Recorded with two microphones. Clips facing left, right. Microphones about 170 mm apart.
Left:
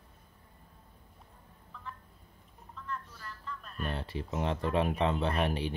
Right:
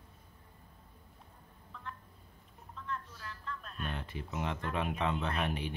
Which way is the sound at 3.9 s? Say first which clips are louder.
Left 6 dB; 35° left (ahead or behind).